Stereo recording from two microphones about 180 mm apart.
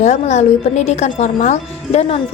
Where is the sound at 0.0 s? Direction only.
40° left (ahead or behind).